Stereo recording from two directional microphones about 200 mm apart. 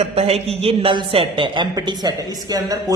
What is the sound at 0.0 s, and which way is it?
A woman's voice, 30° right (ahead or behind).